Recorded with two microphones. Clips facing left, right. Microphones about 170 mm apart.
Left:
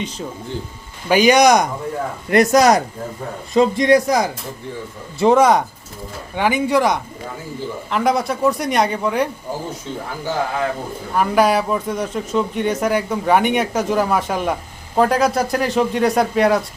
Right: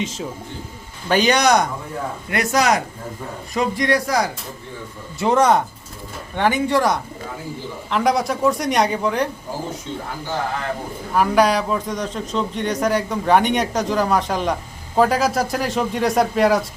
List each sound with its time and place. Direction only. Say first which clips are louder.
1.0 s speech: left 4 dB; 10° left (ahead or behind)
2.3 s speech: left 6 dB; 40° left (ahead or behind)
3.5 s speech: left 6 dB; 25° left (ahead or behind)
5.3 s speech: left 2 dB; 10° left (ahead or behind)
7.9 s a man's voice: even; centre (ahead or behind)
11.1 s a man's voice: left 1 dB; centre (ahead or behind)